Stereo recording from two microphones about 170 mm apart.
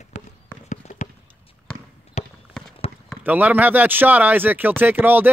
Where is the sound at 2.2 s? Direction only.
40° left (ahead or behind).